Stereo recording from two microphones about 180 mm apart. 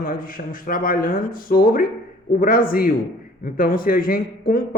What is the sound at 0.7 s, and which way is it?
Speech, 50° left (ahead or behind).